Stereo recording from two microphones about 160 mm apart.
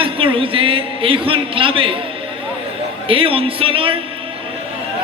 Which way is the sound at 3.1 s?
35° right (ahead or behind).